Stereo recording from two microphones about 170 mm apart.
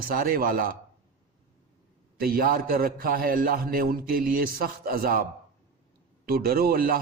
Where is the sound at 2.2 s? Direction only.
60° right (ahead or behind).